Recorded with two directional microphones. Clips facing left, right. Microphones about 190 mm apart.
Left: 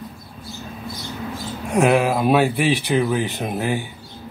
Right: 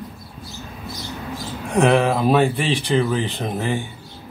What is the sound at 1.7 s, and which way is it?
Speech, 5° left (ahead or behind).